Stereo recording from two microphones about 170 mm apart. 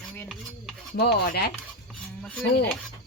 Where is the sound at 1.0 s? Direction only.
65° left (ahead or behind).